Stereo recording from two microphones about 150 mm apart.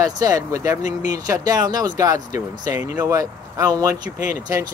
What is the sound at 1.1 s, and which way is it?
Speech, 25° right (ahead or behind).